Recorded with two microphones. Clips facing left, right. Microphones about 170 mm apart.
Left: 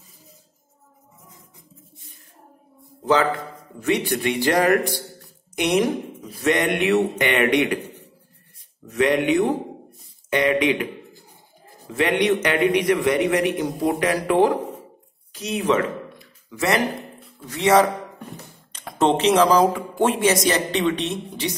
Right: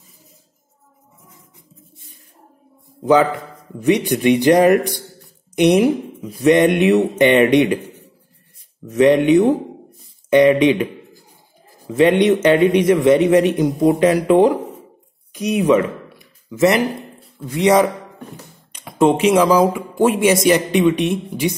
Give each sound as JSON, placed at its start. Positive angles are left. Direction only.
{"t": 3.8, "sound": "a man's voice", "side_deg": -15}
{"t": 8.9, "sound": "a man's voice", "side_deg": -25}
{"t": 11.9, "sound": "a man's voice", "side_deg": -25}
{"t": 18.9, "sound": "a man's voice", "side_deg": -10}